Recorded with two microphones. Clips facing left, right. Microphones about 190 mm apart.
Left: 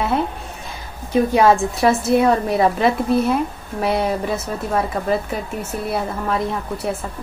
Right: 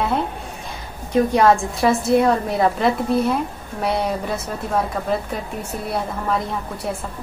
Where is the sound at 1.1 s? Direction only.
5° left (ahead or behind).